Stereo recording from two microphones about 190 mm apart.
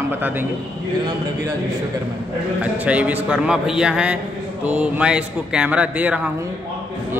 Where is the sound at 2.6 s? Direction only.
5° right (ahead or behind).